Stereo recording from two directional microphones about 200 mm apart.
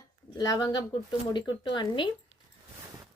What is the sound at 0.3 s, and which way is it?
A woman's voice, 20° left (ahead or behind).